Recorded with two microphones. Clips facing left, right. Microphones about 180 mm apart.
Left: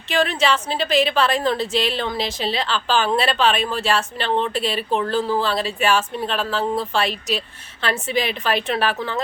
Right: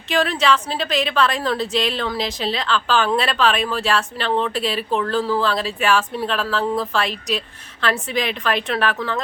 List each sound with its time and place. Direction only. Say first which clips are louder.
0.1 s a woman's voice: right 1 dB; centre (ahead or behind)
8.8 s speech: even; 30° left (ahead or behind)